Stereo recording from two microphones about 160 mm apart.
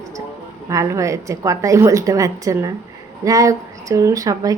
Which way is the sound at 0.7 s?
20° right (ahead or behind).